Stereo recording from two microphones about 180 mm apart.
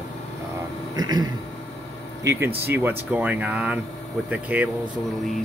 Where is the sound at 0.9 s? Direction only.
20° right (ahead or behind).